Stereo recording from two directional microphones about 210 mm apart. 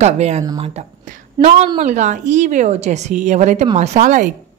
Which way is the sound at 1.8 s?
35° right (ahead or behind).